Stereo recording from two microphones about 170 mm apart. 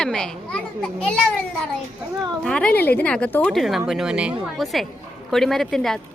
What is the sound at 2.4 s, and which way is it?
A woman's voice, 5° left (ahead or behind).